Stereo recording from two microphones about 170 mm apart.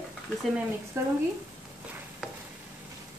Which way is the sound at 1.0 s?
15° right (ahead or behind).